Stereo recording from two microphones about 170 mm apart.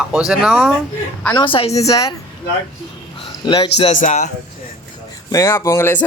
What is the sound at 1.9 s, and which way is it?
Speech, 20° left (ahead or behind).